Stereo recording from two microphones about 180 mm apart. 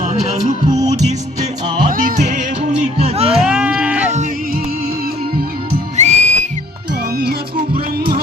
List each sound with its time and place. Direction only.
0.0 s music: 40° right (ahead or behind)
0.6 s music: 25° right (ahead or behind)
1.9 s music: 50° right (ahead or behind); by 3.3 s 35° right (ahead or behind)
3.3 s a sound: 5° right (ahead or behind)
6.0 s whistle: 40° right (ahead or behind)
7.9 s music: 60° right (ahead or behind)